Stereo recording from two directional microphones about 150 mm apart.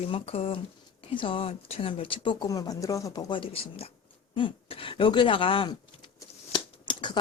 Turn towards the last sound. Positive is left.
turn(degrees=30)  # may be behind; listen again after turning